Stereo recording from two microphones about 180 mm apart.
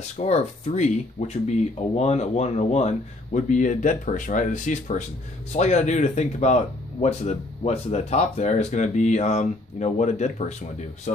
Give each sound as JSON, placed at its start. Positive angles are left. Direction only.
{"t": 0.2, "sound": "speech", "side_deg": 35}